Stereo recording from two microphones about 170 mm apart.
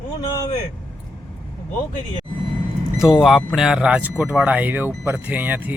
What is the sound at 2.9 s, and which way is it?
Speech, 5° right (ahead or behind).